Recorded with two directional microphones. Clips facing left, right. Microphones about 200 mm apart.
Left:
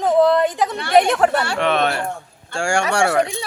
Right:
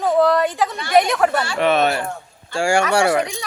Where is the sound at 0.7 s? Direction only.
65° left (ahead or behind).